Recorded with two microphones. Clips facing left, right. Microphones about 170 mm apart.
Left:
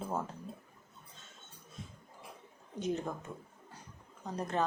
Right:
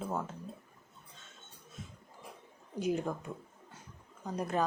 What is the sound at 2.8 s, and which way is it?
Speech, 10° right (ahead or behind).